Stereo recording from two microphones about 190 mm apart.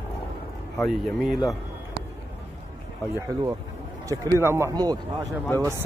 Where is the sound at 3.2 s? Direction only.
15° right (ahead or behind).